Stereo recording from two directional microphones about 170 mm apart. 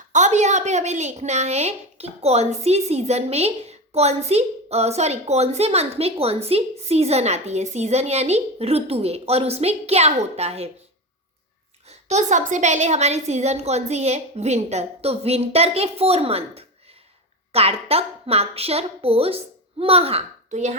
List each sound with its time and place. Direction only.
0.1 s a woman's voice: 45° right (ahead or behind)
11.9 s a woman's voice: 40° right (ahead or behind)